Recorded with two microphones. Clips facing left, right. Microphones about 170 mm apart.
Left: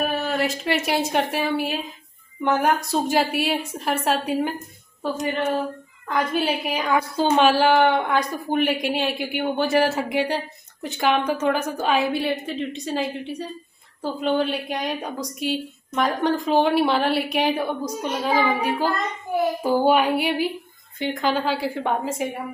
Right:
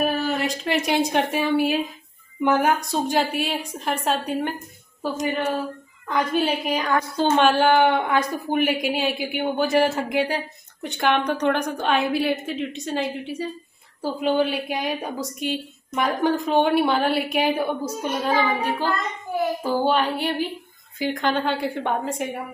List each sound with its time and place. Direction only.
0.3 s a woman's voice: centre (ahead or behind)
6.0 s a woman's voice: 5° left (ahead or behind)
18.3 s a sound: 10° left (ahead or behind)
21.0 s a woman's voice: centre (ahead or behind)